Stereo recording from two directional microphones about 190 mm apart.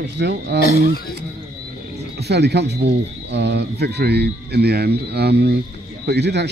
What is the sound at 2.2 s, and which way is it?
Speech, 60° right (ahead or behind).